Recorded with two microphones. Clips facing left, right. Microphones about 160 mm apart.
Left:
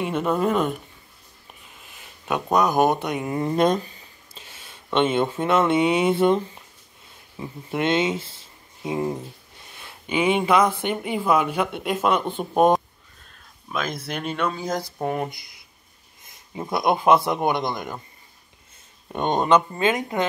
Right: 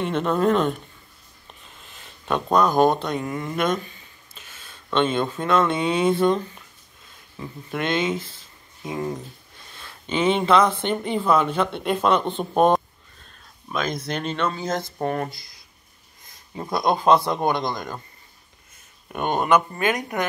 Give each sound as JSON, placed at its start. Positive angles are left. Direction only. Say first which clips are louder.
{"t": 0.0, "sound": "speech", "louder": "right 1 dB", "side_deg": 10}
{"t": 2.2, "sound": "speech", "louder": "right 1 dB", "side_deg": 10}
{"t": 3.3, "sound": "a man's voice", "louder": "left 7 dB", "side_deg": 30}
{"t": 16.7, "sound": "a man's voice", "louder": "even", "side_deg": 20}
{"t": 19.0, "sound": "a man's voice", "louder": "left 1 dB", "side_deg": 25}